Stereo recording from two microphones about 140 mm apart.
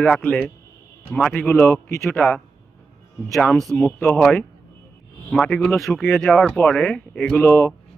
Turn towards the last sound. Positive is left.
turn(degrees=20)  # may be behind; listen again after turning